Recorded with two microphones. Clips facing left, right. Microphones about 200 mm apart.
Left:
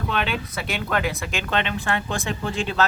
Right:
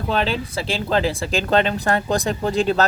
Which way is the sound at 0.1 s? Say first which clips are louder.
Right 6 dB; 30° right (ahead or behind).